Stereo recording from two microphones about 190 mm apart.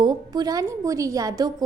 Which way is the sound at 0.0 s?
20° right (ahead or behind).